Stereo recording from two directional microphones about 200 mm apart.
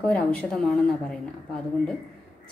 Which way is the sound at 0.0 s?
5° left (ahead or behind).